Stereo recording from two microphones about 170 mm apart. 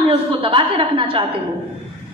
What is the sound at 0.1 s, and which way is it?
A woman's voice, 30° right (ahead or behind).